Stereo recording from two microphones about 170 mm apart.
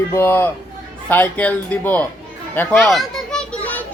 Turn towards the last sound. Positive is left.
turn(degrees=10)  # may be behind; listen again after turning